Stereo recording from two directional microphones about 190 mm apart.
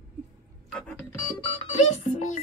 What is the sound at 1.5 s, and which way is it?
Speech, 35° left (ahead or behind).